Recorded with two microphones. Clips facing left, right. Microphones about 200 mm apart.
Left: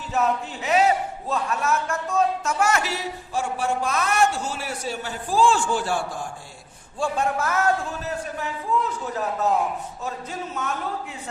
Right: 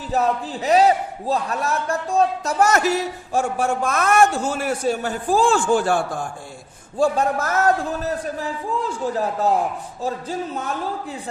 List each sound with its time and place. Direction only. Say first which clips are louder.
0.1 s a man's voice: right 3 dB; 35° right (ahead or behind)
7.0 s a man's voice: right 5 dB; 40° right (ahead or behind)